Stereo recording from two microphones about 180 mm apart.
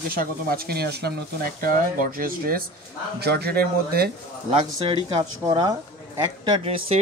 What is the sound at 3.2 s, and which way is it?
Speech, 60° right (ahead or behind).